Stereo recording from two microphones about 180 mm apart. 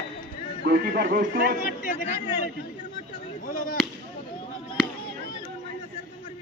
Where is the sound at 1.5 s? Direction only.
50° left (ahead or behind).